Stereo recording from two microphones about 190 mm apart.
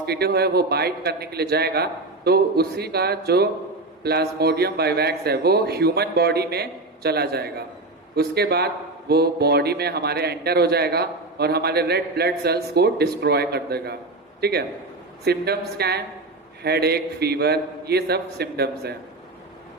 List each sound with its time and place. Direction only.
0.0 s speech: 55° right (ahead or behind)
15.2 s speech: 55° right (ahead or behind)